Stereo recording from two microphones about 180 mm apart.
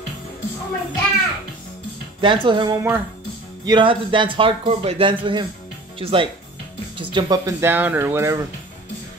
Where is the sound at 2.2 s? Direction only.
25° right (ahead or behind).